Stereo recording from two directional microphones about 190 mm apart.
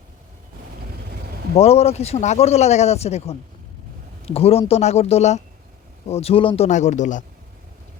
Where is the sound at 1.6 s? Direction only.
35° left (ahead or behind).